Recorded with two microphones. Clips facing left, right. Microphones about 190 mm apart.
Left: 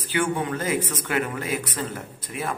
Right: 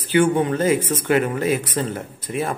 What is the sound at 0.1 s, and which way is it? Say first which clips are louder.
Speech: right 8 dB; 25° right (ahead or behind).